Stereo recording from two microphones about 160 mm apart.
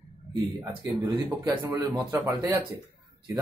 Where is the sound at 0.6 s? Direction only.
20° right (ahead or behind).